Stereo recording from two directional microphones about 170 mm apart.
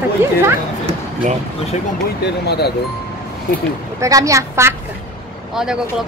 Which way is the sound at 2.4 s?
75° left (ahead or behind).